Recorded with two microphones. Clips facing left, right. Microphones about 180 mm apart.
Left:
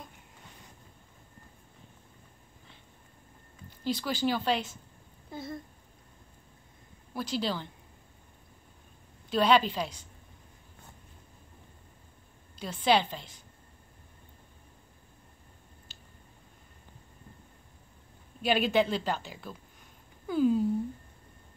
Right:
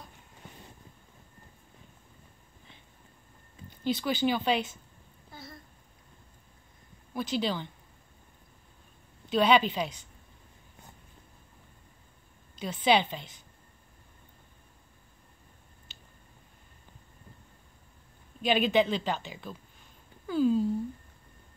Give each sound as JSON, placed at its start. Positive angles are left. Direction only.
{"t": 3.9, "sound": "speech", "side_deg": 0}
{"t": 5.3, "sound": "a sound", "side_deg": 25}
{"t": 7.2, "sound": "speech", "side_deg": 0}
{"t": 9.3, "sound": "speech", "side_deg": 0}
{"t": 12.8, "sound": "speech", "side_deg": 0}
{"t": 18.4, "sound": "speech", "side_deg": 5}